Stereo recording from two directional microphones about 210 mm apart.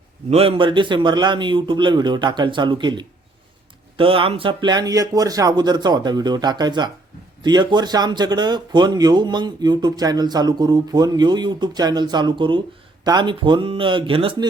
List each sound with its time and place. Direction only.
0.3 s speech: 30° right (ahead or behind)